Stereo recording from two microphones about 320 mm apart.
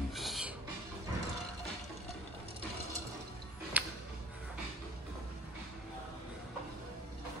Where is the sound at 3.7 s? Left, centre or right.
Centre.